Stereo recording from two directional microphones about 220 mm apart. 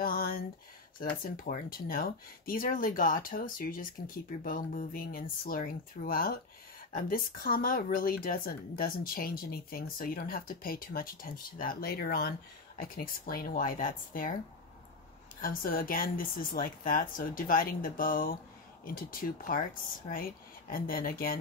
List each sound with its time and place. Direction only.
0.0 s a sound: 40° left (ahead or behind)
1.2 s speech: 40° left (ahead or behind)
15.4 s speech: 40° left (ahead or behind)